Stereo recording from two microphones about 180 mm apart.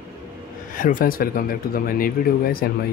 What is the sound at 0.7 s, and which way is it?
Speech, 50° left (ahead or behind).